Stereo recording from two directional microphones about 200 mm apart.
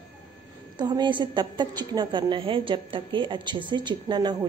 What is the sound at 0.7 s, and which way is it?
A woman's voice, 20° right (ahead or behind).